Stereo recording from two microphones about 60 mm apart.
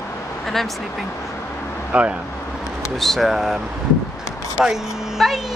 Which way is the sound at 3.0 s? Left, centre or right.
Centre.